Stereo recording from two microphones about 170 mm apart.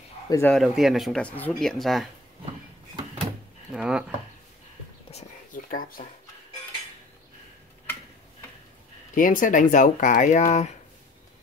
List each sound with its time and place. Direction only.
0.3 s speech: 15° left (ahead or behind)
0.6 s speech: centre (ahead or behind)
3.7 s speech: 5° right (ahead or behind)
5.1 s a sound: 50° left (ahead or behind)
9.1 s speech: 50° left (ahead or behind)